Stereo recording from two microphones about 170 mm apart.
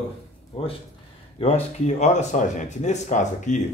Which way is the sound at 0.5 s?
35° left (ahead or behind).